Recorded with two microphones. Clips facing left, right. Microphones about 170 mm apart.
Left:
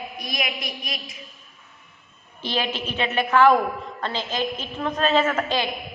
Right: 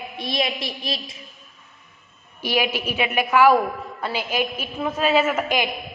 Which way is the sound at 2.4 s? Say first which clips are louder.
Right 3 dB; 10° right (ahead or behind).